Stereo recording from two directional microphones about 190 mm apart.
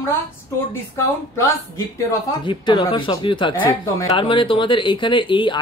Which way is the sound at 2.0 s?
25° left (ahead or behind).